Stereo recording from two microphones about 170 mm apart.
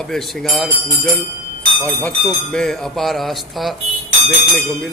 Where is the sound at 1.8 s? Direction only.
10° left (ahead or behind).